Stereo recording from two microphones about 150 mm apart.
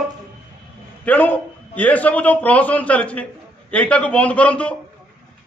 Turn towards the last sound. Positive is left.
turn(degrees=10)  # may be behind; listen again after turning